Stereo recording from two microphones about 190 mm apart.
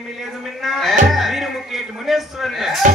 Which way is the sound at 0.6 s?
Centre (ahead or behind).